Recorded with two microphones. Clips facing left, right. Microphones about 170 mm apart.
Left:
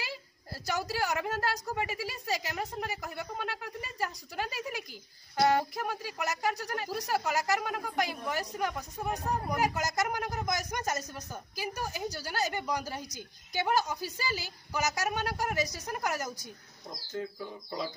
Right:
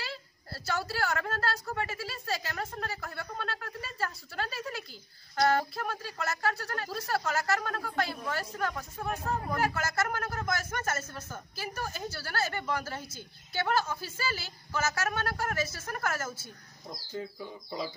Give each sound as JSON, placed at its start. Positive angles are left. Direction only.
{"t": 0.7, "sound": "a woman's voice", "side_deg": 15}
{"t": 17.1, "sound": "speech", "side_deg": -5}